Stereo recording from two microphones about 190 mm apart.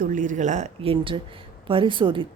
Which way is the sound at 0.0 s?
45° right (ahead or behind).